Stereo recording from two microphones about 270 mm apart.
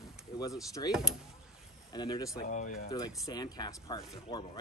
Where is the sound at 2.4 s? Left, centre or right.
Left.